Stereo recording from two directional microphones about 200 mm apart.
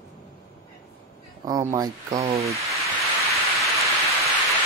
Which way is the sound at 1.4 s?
15° right (ahead or behind).